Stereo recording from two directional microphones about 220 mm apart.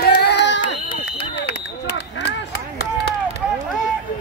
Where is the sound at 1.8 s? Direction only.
50° left (ahead or behind).